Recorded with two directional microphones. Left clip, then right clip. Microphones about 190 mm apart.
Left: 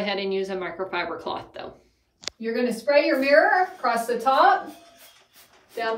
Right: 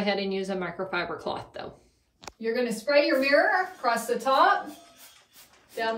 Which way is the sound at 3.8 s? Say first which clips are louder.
Left 3 dB; 20° left (ahead or behind).